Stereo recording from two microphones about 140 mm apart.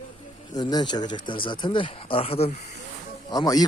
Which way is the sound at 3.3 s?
30° left (ahead or behind).